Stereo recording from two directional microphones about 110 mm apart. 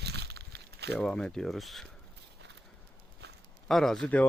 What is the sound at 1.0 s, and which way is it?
Speech, 5° left (ahead or behind).